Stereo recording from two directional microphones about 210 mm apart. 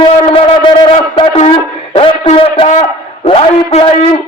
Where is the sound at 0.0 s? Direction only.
25° left (ahead or behind).